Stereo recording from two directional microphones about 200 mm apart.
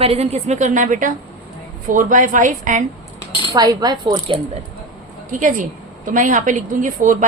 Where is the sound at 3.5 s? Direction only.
20° right (ahead or behind).